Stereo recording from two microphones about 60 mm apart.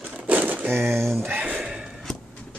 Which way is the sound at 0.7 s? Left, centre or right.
Right.